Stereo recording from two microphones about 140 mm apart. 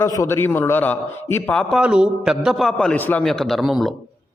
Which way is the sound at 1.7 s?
5° right (ahead or behind).